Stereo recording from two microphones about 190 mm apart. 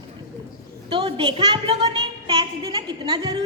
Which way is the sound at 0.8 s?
25° right (ahead or behind).